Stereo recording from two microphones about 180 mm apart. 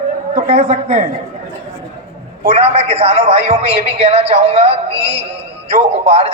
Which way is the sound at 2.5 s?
35° right (ahead or behind).